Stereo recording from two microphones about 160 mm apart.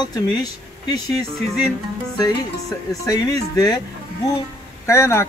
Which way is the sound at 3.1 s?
25° left (ahead or behind).